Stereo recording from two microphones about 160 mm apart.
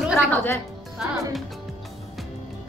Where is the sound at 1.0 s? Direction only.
5° right (ahead or behind).